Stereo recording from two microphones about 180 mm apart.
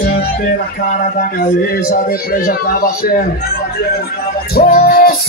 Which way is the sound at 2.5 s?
55° left (ahead or behind).